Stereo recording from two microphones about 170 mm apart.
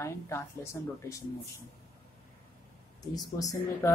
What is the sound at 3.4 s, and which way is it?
Speech, 20° left (ahead or behind).